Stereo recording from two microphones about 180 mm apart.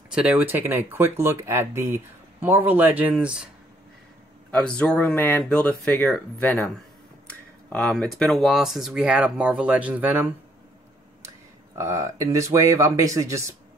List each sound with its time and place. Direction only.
0.1 s speech: 5° right (ahead or behind)
4.5 s speech: 5° left (ahead or behind)
7.7 s speech: 5° left (ahead or behind)
11.2 s speech: 15° right (ahead or behind)